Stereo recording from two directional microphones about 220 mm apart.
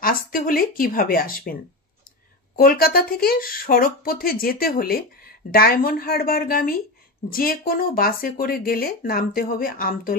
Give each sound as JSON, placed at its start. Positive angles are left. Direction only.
{"t": 0.0, "sound": "speech", "side_deg": 40}